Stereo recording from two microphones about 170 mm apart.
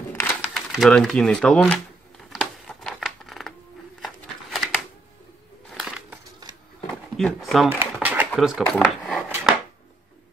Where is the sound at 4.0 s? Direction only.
Centre (ahead or behind).